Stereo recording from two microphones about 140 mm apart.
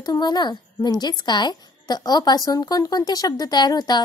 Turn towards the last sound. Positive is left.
turn(degrees=30)  # may be behind; listen again after turning